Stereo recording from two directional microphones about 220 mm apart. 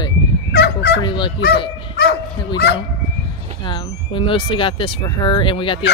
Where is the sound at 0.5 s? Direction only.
50° left (ahead or behind).